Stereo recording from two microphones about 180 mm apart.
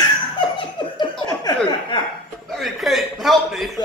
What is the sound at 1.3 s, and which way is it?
Chuckle, 20° left (ahead or behind).